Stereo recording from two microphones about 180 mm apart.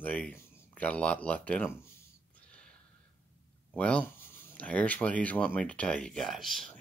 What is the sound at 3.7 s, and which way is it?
Speech, 5° left (ahead or behind).